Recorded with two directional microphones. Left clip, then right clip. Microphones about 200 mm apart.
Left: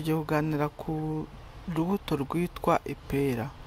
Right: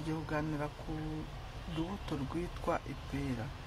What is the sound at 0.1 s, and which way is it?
Speech, 55° left (ahead or behind).